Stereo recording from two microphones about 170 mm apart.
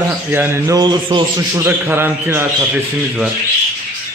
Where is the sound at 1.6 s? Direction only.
15° right (ahead or behind).